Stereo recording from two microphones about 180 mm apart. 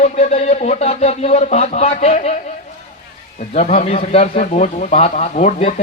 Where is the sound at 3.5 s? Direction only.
40° left (ahead or behind).